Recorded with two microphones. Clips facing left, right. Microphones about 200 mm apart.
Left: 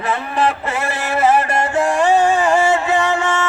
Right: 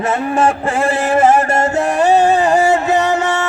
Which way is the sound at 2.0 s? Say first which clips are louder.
Right 4 dB; 40° right (ahead or behind).